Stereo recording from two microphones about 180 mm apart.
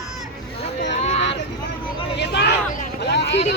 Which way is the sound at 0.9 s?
35° left (ahead or behind).